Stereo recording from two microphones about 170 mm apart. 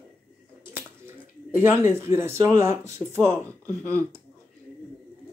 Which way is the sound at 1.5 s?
15° right (ahead or behind).